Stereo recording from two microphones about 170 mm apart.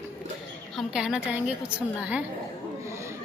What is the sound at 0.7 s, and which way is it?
A woman's voice, 5° right (ahead or behind).